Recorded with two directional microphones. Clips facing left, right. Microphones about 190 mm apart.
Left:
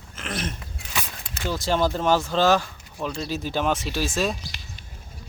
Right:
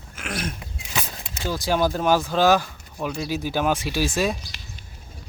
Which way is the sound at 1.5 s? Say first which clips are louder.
Right 1 dB; 15° right (ahead or behind).